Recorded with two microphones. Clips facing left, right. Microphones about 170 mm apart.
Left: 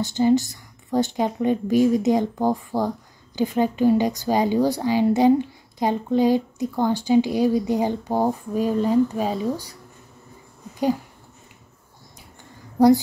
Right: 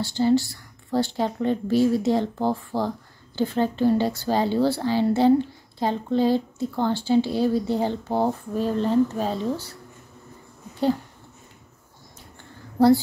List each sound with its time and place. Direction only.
0.0 s speech: 20° left (ahead or behind)
12.7 s a woman's voice: 15° left (ahead or behind)